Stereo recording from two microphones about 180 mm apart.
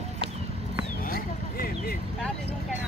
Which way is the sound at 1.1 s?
55° left (ahead or behind).